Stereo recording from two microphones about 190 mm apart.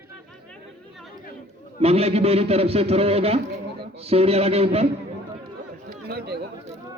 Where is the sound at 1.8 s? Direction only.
30° right (ahead or behind).